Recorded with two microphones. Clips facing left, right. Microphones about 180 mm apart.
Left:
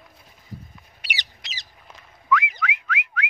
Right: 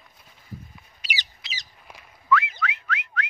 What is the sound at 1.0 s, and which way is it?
Squawk, 65° left (ahead or behind).